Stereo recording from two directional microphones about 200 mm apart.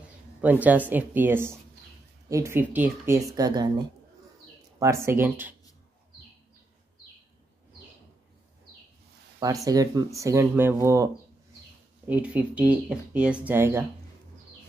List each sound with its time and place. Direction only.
0.4 s speech: 10° right (ahead or behind)
4.7 s speech: 15° right (ahead or behind)
9.4 s speech: 15° right (ahead or behind)
12.1 s speech: 5° right (ahead or behind)